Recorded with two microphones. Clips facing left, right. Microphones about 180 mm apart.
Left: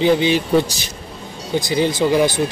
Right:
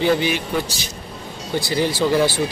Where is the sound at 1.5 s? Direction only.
15° left (ahead or behind).